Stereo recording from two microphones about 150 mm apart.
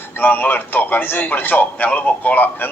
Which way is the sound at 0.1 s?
10° left (ahead or behind).